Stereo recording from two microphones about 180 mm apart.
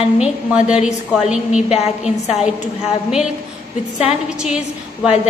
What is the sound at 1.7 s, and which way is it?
Speech, 35° left (ahead or behind).